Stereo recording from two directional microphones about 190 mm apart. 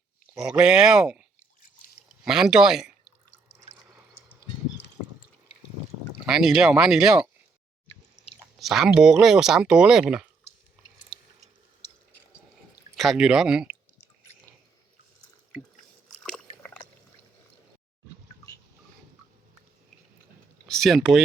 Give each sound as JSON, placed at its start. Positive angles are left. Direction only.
{"t": 0.4, "sound": "speech", "side_deg": -5}
{"t": 2.2, "sound": "speech", "side_deg": -5}
{"t": 6.2, "sound": "speech", "side_deg": -5}
{"t": 8.5, "sound": "speech", "side_deg": 0}
{"t": 13.0, "sound": "speech", "side_deg": 0}
{"t": 16.0, "sound": "a sound", "side_deg": 5}
{"t": 20.7, "sound": "speech", "side_deg": 0}